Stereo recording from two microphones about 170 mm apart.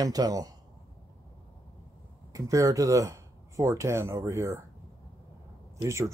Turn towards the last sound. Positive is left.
turn(degrees=-15)  # may be behind; listen again after turning